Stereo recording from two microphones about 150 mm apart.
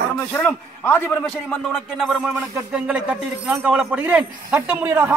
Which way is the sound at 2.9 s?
5° right (ahead or behind).